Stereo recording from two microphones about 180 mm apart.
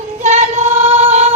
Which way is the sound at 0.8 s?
35° right (ahead or behind).